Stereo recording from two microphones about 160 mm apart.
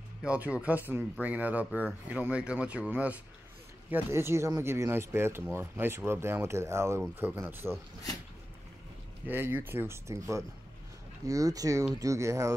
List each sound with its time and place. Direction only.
0.2 s speech: 5° right (ahead or behind)
9.3 s speech: 15° right (ahead or behind)